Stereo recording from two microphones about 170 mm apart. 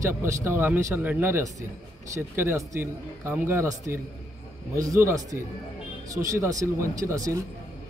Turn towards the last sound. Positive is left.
turn(degrees=-20)  # may be behind; listen again after turning